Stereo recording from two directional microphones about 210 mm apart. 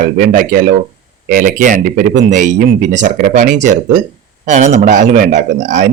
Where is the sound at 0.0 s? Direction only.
40° right (ahead or behind).